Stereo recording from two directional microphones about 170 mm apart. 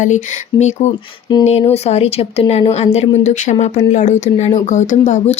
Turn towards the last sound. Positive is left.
turn(degrees=45)  # may be behind; listen again after turning